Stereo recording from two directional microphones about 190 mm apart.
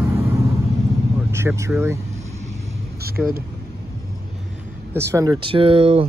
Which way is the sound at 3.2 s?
5° right (ahead or behind).